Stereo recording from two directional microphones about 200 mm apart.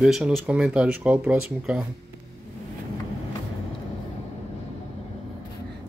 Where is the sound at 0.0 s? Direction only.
Centre (ahead or behind).